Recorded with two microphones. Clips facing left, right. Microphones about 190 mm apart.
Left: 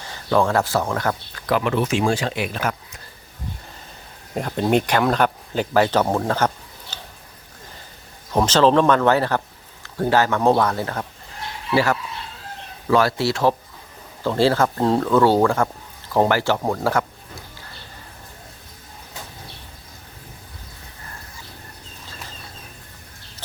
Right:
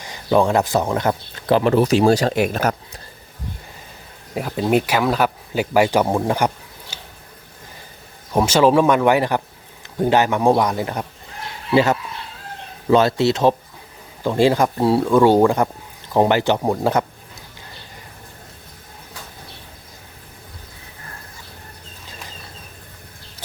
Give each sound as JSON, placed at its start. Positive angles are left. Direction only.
{"t": 0.0, "sound": "speech", "side_deg": -15}
{"t": 4.4, "sound": "speech", "side_deg": -5}
{"t": 6.9, "sound": "a sound", "side_deg": -10}
{"t": 8.3, "sound": "speech", "side_deg": -10}